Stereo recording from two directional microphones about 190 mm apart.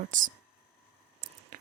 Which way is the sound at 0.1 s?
45° right (ahead or behind).